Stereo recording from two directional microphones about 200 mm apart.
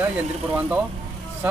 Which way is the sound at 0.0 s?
5° right (ahead or behind).